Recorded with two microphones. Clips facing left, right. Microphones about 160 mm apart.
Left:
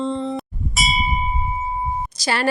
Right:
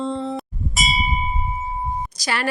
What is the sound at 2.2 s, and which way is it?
Speech, 30° left (ahead or behind).